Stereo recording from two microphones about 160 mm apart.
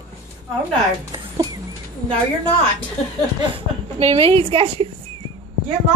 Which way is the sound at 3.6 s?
35° right (ahead or behind).